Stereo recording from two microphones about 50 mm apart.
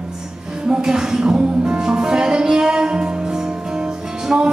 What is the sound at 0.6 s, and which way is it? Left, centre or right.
Music, centre.